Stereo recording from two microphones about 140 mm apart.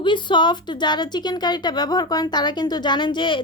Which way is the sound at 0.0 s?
35° left (ahead or behind).